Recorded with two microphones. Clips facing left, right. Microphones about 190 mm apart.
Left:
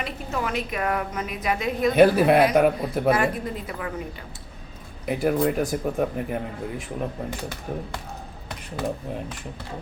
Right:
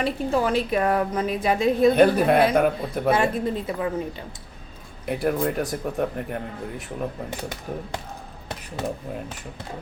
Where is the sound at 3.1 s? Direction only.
25° right (ahead or behind).